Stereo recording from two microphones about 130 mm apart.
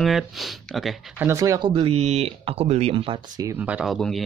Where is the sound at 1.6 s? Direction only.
45° right (ahead or behind).